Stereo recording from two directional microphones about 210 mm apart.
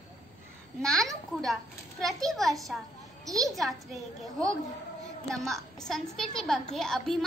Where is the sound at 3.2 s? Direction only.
15° right (ahead or behind).